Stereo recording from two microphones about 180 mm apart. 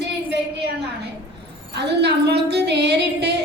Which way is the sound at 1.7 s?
70° right (ahead or behind).